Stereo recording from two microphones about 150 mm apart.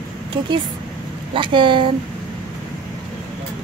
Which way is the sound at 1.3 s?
35° right (ahead or behind).